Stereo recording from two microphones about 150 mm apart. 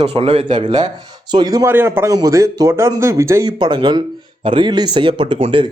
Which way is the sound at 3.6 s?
30° right (ahead or behind).